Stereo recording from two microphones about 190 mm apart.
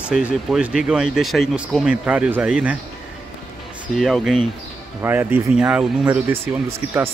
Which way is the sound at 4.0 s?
Centre (ahead or behind).